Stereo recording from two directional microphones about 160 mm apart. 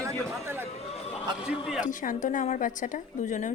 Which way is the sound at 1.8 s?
55° left (ahead or behind).